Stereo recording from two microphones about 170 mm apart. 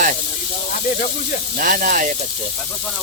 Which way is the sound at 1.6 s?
55° right (ahead or behind).